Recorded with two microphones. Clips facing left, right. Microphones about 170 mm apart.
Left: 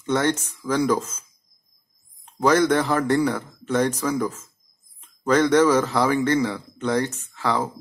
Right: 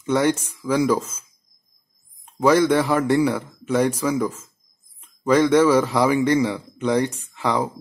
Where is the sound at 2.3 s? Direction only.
10° right (ahead or behind).